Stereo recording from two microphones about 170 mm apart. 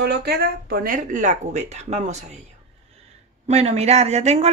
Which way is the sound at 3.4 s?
40° right (ahead or behind).